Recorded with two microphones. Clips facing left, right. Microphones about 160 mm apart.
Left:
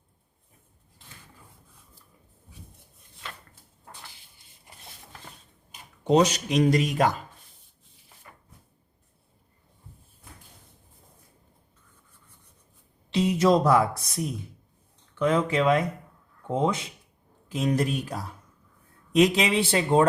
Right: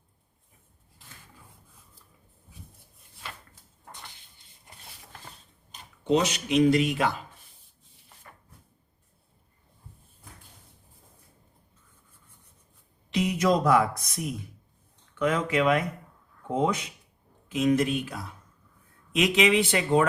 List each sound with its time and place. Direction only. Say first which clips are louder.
6.1 s speech: left 3 dB; 40° left (ahead or behind)
13.1 s speech: left 3 dB; 30° left (ahead or behind)